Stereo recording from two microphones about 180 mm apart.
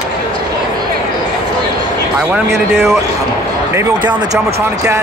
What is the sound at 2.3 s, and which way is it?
Speech, 15° right (ahead or behind).